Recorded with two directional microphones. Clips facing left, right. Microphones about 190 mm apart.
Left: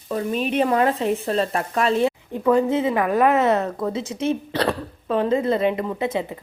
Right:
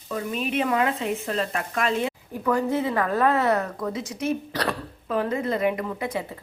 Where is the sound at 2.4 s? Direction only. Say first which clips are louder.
Left 5 dB; 20° left (ahead or behind).